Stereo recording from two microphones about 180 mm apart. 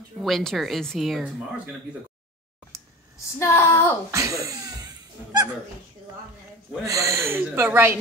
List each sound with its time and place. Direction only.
0.2 s speech: centre (ahead or behind)
3.3 s speech: 15° left (ahead or behind)
4.1 s a sound: 15° right (ahead or behind)
6.9 s speech: 15° right (ahead or behind)